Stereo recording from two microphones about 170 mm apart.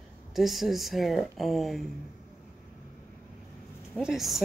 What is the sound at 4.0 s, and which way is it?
Speech, centre (ahead or behind).